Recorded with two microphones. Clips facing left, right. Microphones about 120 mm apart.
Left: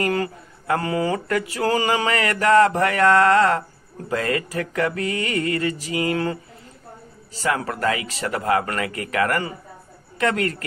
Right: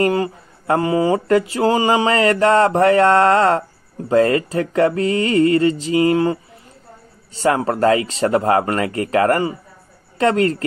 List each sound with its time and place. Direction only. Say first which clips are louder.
0.0 s speech: right 5 dB; 25° right (ahead or behind)
7.4 s a woman's voice: right 7 dB; 30° right (ahead or behind)